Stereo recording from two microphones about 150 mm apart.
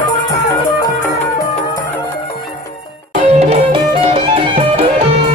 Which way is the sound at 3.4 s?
40° right (ahead or behind).